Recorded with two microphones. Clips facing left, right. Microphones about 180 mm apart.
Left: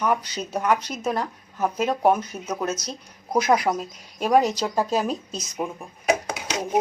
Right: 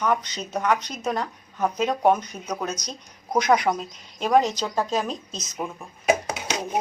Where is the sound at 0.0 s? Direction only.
10° left (ahead or behind).